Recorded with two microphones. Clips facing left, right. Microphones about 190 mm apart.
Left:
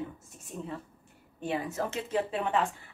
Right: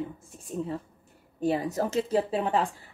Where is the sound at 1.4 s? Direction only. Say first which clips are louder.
Right 5 dB; 40° right (ahead or behind).